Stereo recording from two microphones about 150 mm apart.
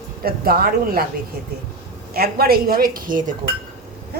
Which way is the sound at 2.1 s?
90° right.